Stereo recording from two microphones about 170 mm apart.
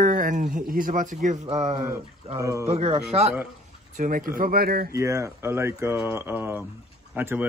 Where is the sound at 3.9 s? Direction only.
50° right (ahead or behind).